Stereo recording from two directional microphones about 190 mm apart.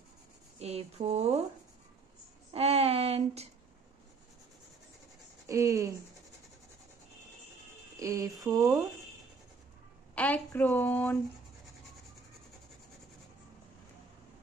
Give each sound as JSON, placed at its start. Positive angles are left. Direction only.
{"t": 0.6, "sound": "speech", "side_deg": -35}
{"t": 2.5, "sound": "speech", "side_deg": -30}
{"t": 5.5, "sound": "speech", "side_deg": -15}
{"t": 8.0, "sound": "a sound", "side_deg": -15}
{"t": 8.5, "sound": "speech", "side_deg": -15}
{"t": 10.1, "sound": "a woman's voice", "side_deg": 10}